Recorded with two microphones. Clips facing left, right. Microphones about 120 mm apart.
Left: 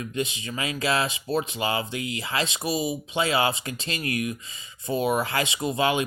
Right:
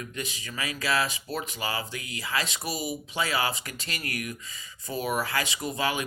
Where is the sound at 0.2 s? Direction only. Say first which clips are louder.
Left 7 dB; 25° left (ahead or behind).